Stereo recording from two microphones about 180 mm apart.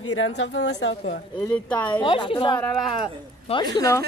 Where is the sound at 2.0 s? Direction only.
30° left (ahead or behind).